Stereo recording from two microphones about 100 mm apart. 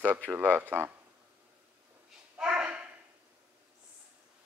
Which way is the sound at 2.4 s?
10° right (ahead or behind).